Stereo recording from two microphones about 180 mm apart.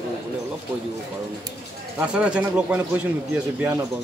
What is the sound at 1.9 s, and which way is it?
Speech, 5° right (ahead or behind).